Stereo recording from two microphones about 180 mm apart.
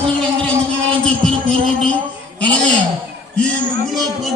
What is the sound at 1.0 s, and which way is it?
Music, 5° left (ahead or behind).